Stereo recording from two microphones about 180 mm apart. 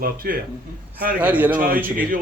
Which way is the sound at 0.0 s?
50° right (ahead or behind).